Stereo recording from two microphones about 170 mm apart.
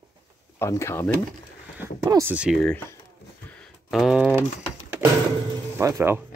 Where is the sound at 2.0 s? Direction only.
20° right (ahead or behind).